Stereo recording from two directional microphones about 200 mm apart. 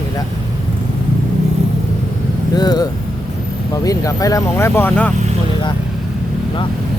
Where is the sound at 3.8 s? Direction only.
15° left (ahead or behind).